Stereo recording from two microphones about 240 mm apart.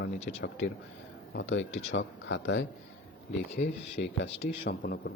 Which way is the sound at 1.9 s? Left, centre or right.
Left.